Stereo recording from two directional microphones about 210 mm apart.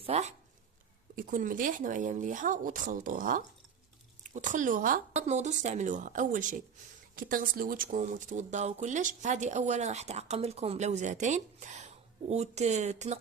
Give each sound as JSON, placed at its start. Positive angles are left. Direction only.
{"t": 0.0, "sound": "speech", "side_deg": -30}